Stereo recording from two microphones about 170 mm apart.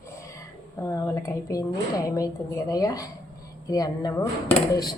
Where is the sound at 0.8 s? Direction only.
15° left (ahead or behind).